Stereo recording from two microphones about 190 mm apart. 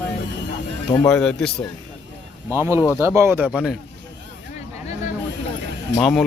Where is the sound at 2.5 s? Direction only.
15° right (ahead or behind).